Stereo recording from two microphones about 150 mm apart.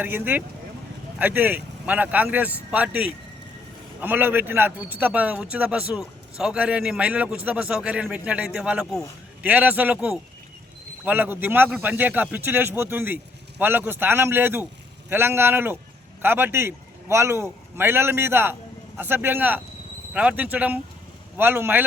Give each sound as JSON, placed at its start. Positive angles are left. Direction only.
{"t": 0.0, "sound": "a man's voice", "side_deg": -15}